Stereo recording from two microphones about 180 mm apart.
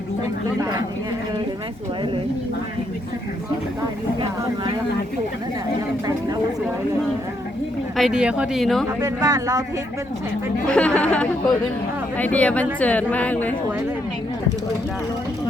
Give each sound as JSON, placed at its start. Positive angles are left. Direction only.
{"t": 4.2, "sound": "speech", "side_deg": -25}
{"t": 7.9, "sound": "speech", "side_deg": -5}
{"t": 9.0, "sound": "speech", "side_deg": -20}
{"t": 10.7, "sound": "a woman's voice", "side_deg": 5}